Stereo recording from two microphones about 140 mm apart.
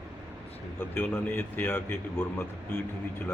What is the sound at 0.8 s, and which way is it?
A man's voice, 15° left (ahead or behind).